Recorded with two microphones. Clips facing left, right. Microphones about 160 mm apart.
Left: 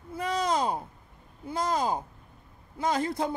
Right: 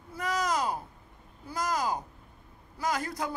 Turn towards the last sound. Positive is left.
turn(degrees=25)  # may be behind; listen again after turning